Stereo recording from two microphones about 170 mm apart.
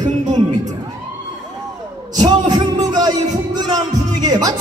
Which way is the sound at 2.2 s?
25° right (ahead or behind).